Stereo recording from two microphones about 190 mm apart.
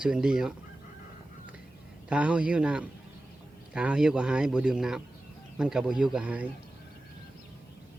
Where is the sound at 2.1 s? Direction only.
5° right (ahead or behind).